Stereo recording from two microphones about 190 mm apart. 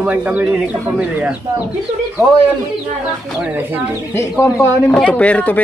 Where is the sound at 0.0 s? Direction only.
5° right (ahead or behind).